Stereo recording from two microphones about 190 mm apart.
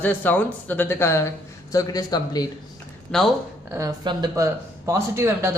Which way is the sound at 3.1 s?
5° left (ahead or behind).